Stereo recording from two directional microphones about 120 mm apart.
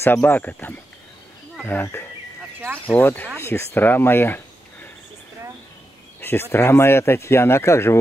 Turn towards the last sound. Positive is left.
turn(degrees=20)  # may be behind; listen again after turning